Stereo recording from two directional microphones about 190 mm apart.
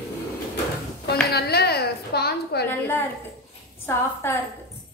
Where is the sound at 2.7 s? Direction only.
10° left (ahead or behind).